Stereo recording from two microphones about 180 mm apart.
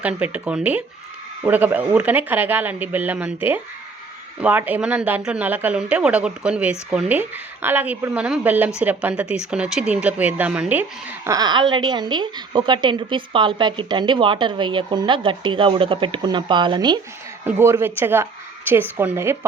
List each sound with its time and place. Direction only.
0.0 s speech: 5° right (ahead or behind)
11.3 s a woman's voice: 20° right (ahead or behind)
17.4 s speech: 15° right (ahead or behind)